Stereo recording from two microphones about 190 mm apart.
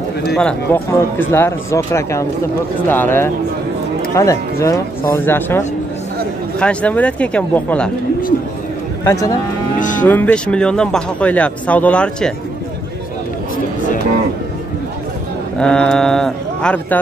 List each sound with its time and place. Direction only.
0.4 s speech: 10° left (ahead or behind)
6.6 s speech: 5° left (ahead or behind)
9.0 s speech: 15° left (ahead or behind)
9.8 s music: 45° left (ahead or behind)
10.0 s speech: 10° left (ahead or behind)
15.6 s speech: 5° left (ahead or behind)